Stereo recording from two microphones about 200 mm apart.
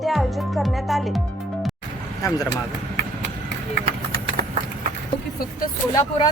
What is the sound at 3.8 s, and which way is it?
Clip-clop, 50° right (ahead or behind).